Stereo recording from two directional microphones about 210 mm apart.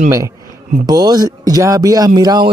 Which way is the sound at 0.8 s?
20° right (ahead or behind).